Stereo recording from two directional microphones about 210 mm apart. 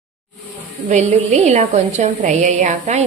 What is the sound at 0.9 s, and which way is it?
A woman's voice, 35° right (ahead or behind).